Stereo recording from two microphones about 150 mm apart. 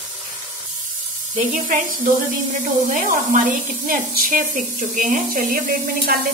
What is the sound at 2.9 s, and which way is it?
Speech, 60° right (ahead or behind).